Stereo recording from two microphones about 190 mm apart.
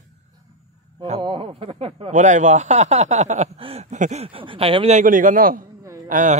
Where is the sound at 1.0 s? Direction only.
30° right (ahead or behind).